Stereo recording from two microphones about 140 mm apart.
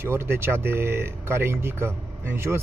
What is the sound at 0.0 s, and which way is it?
Speech, 15° right (ahead or behind).